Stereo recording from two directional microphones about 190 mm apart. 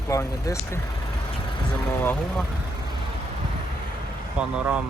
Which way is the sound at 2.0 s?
5° left (ahead or behind).